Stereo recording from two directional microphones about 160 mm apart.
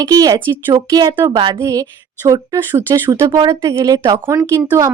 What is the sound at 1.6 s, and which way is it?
A woman's voice, 20° right (ahead or behind).